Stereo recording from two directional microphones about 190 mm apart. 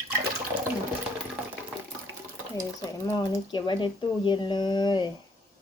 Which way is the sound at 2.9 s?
20° left (ahead or behind).